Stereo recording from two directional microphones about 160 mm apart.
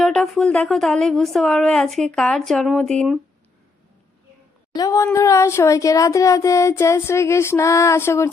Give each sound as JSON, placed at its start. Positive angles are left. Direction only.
{"t": 0.0, "sound": "speech", "side_deg": 5}
{"t": 4.7, "sound": "speech", "side_deg": 20}
{"t": 5.1, "sound": "a sound", "side_deg": 20}